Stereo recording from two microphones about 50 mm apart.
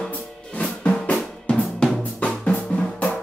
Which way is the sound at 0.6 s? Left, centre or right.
Left.